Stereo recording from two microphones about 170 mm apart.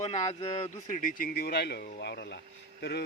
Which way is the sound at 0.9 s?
55° left (ahead or behind).